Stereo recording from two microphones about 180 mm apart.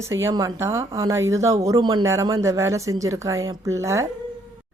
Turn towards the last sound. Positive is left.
turn(degrees=-15)  # may be behind; listen again after turning